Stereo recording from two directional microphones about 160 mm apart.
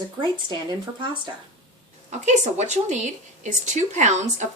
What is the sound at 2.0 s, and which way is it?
A woman's voice, 50° right (ahead or behind).